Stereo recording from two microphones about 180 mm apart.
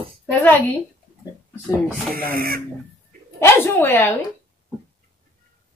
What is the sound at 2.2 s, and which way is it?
Speech, 55° right (ahead or behind).